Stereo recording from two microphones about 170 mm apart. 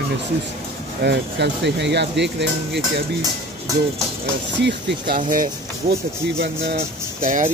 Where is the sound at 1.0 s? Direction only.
90° right.